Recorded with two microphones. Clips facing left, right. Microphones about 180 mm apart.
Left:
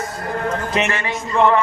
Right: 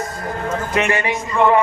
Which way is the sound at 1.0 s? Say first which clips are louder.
Even; 15° right (ahead or behind).